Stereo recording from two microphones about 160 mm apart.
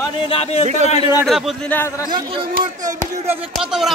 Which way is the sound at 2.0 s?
30° right (ahead or behind).